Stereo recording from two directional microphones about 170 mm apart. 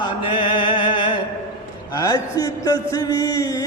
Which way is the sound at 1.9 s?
20° left (ahead or behind).